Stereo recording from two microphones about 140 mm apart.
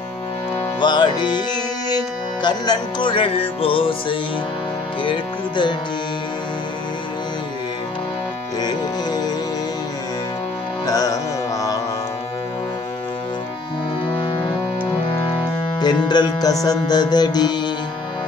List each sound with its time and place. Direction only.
0.7 s music: 35° left (ahead or behind)
8.5 s music: 30° left (ahead or behind)
10.9 s music: 25° left (ahead or behind)
15.8 s music: 30° left (ahead or behind)